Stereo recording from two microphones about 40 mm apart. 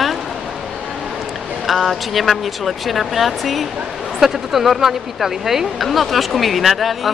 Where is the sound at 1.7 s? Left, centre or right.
Centre.